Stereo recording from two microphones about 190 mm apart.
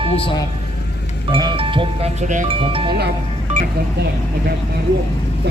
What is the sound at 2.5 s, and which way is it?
Speech, 30° right (ahead or behind).